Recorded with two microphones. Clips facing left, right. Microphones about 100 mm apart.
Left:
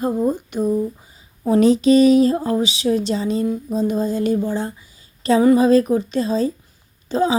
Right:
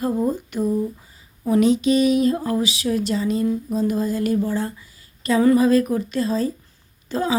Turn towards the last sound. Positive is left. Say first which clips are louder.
# left 5 dB
turn(degrees=20)  # may be behind; listen again after turning